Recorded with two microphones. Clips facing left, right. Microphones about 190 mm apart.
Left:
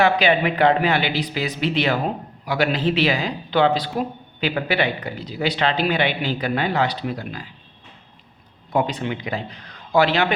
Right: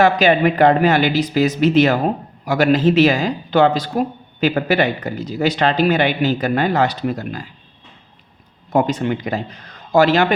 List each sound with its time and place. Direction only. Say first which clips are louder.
0.0 s speech: right 4 dB; 45° right (ahead or behind)
8.7 s speech: right 5 dB; 45° right (ahead or behind)